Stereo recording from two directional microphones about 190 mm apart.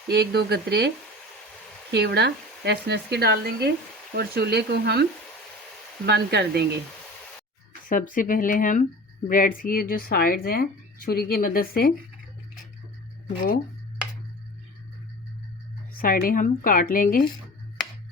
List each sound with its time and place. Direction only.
0.1 s speech: 60° right (ahead or behind)
1.9 s speech: 60° right (ahead or behind)
6.1 s speech: 60° right (ahead or behind)
7.9 s a woman's voice: 45° left (ahead or behind)
15.9 s a woman's voice: 50° left (ahead or behind)